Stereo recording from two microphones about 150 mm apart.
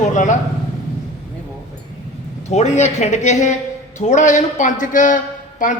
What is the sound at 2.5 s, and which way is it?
A man's voice, 50° left (ahead or behind).